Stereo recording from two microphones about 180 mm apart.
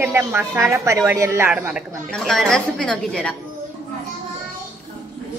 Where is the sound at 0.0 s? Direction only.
10° right (ahead or behind).